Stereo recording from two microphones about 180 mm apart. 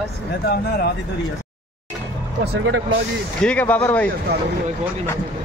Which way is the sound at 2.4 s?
60° right (ahead or behind).